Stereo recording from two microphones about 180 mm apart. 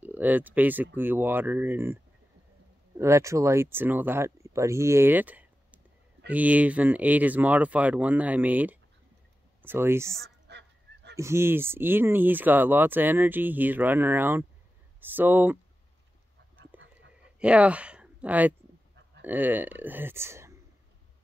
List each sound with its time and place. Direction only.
0.0 s speech: 10° right (ahead or behind)
3.0 s speech: 15° right (ahead or behind)
10.5 s goose: 70° right (ahead or behind)
11.1 s speech: 15° right (ahead or behind)
16.7 s a sound: 90° right
17.4 s speech: 5° right (ahead or behind)